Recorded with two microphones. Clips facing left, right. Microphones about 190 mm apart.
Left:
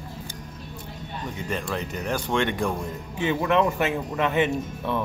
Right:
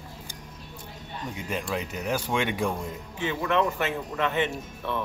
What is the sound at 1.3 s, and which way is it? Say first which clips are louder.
Speech: left 1 dB; 5° right (ahead or behind).